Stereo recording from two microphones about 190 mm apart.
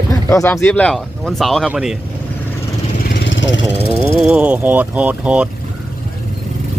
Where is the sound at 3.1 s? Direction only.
70° left (ahead or behind).